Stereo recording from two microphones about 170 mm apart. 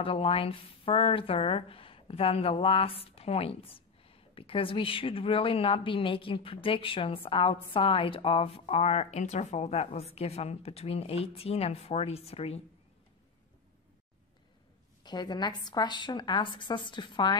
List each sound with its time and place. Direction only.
0.0 s speech: 30° left (ahead or behind)
15.0 s a woman's voice: 25° left (ahead or behind)